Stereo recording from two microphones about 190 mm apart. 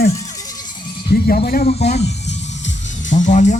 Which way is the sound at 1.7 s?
35° left (ahead or behind).